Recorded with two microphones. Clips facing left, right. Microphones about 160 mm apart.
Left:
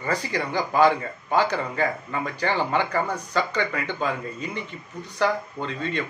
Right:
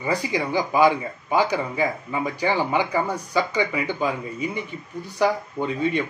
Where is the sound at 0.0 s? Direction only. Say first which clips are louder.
Right 3 dB; 15° right (ahead or behind).